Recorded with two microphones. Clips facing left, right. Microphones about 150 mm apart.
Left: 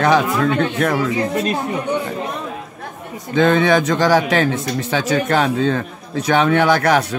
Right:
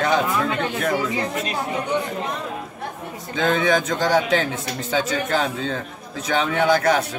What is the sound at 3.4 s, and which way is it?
A man's voice, 70° left (ahead or behind).